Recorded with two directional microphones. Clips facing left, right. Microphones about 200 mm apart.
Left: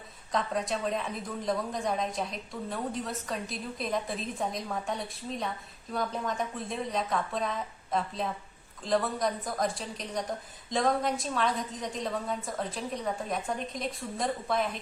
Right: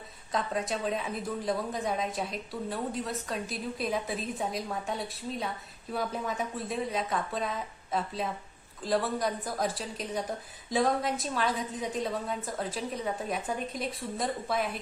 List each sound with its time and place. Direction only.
0.3 s a woman's voice: centre (ahead or behind)